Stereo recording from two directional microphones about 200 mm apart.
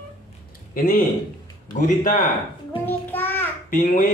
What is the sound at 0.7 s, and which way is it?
Speech, 45° left (ahead or behind).